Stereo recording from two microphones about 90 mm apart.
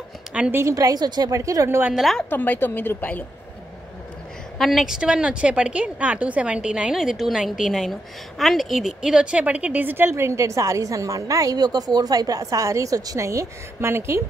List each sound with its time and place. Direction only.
0.3 s a sound: 15° right (ahead or behind)
0.6 s a woman's voice: 40° right (ahead or behind)
1.3 s a woman's voice: 40° right (ahead or behind)
2.0 s a woman's voice: centre (ahead or behind)
2.2 s a woman's voice: 20° left (ahead or behind)
4.6 s a woman's voice: centre (ahead or behind); by 14.2 s 30° right (ahead or behind)